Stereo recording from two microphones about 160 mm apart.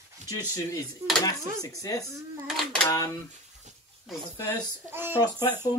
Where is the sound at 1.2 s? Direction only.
20° left (ahead or behind).